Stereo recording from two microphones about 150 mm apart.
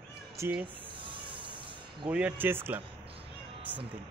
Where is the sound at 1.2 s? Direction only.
35° right (ahead or behind).